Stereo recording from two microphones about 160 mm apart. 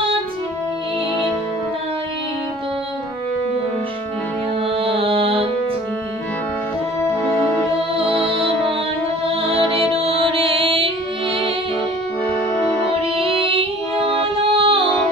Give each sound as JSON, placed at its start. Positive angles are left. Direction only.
{"t": 4.7, "sound": "music", "side_deg": -35}
{"t": 7.0, "sound": "music", "side_deg": 15}
{"t": 7.9, "sound": "music", "side_deg": -35}
{"t": 13.2, "sound": "female singing", "side_deg": -35}